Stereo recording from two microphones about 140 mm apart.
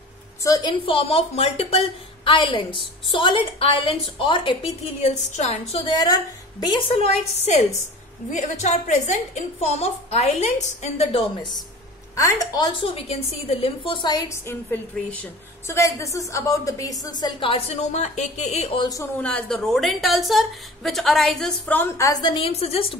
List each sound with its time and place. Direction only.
0.4 s a woman's voice: 25° left (ahead or behind)
5.0 s a woman's voice: 50° left (ahead or behind)
5.9 s a woman's voice: 30° left (ahead or behind)
6.9 s a woman's voice: 45° left (ahead or behind)
8.3 s a woman's voice: 60° left (ahead or behind); by 11.2 s 45° left (ahead or behind)
12.2 s a woman's voice: 25° left (ahead or behind)
14.5 s a woman's voice: 15° left (ahead or behind); by 18.8 s 50° left (ahead or behind)
18.8 s a woman's voice: 25° left (ahead or behind)
19.2 s a woman's voice: 5° left (ahead or behind); by 22.5 s 35° left (ahead or behind)
22.5 s a woman's voice: 45° left (ahead or behind)